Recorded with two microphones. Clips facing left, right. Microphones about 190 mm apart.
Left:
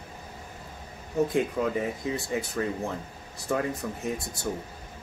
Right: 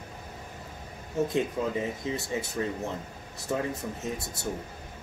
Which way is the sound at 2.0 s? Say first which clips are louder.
Left 2 dB; 25° right (ahead or behind).